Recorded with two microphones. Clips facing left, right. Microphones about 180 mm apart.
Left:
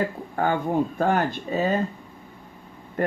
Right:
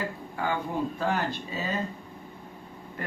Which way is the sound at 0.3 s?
50° left (ahead or behind).